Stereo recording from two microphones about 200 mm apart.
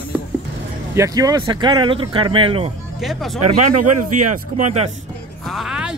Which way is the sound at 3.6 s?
40° right (ahead or behind).